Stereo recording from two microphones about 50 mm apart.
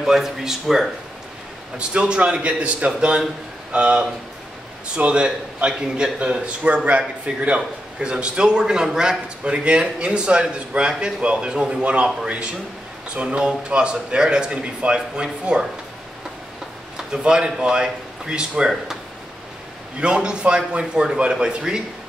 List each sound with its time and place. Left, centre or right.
0.0 s speech: centre
1.8 s a man's voice: centre
13.1 s a man's voice: right
16.9 s speech: centre
20.0 s a man's voice: centre